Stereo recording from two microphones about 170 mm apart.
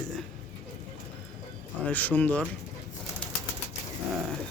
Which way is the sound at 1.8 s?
10° left (ahead or behind).